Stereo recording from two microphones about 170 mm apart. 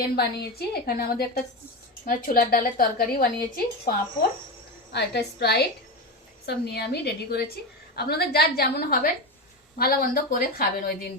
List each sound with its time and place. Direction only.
0.0 s a woman's voice: 70° left (ahead or behind)
4.9 s a woman's voice: 80° left; by 10.9 s 60° left (ahead or behind)